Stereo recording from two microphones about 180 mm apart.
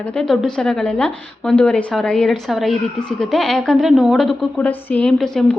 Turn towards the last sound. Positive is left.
turn(degrees=5)  # may be behind; listen again after turning